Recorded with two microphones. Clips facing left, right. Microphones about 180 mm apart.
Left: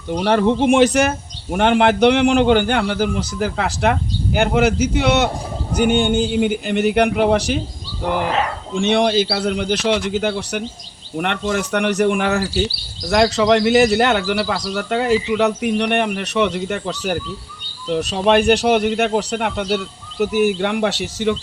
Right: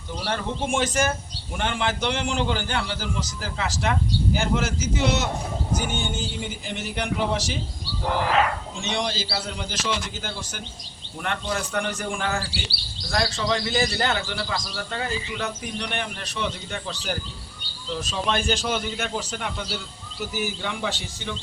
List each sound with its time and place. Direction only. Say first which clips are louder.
0.3 s a man's voice: left 12 dB; 75° left (ahead or behind)
8.7 s a man's voice: left 12 dB; 60° left (ahead or behind)
12.4 s speech: left 13 dB; 45° left (ahead or behind)
13.3 s a man's voice: left 11 dB; 75° left (ahead or behind)